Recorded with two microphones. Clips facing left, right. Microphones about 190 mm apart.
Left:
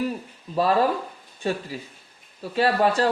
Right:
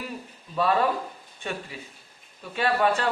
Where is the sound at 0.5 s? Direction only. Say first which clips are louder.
Left 3 dB; 35° left (ahead or behind).